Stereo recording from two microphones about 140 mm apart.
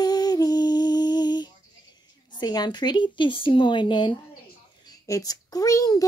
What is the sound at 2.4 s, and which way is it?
A child's voice, 30° left (ahead or behind).